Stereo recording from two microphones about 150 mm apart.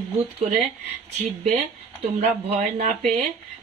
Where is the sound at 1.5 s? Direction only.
45° right (ahead or behind).